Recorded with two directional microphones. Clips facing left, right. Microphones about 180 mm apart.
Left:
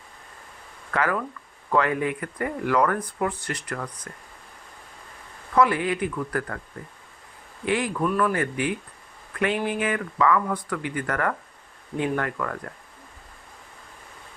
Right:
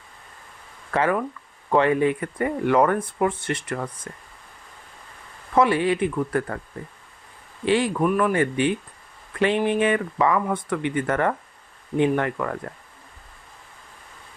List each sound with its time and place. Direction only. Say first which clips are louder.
0.9 s speech: right 3 dB; 25° right (ahead or behind)
5.5 s speech: right 2 dB; 25° right (ahead or behind)
7.6 s speech: right 4 dB; 30° right (ahead or behind)
8.0 s speech: right 3 dB; 15° right (ahead or behind)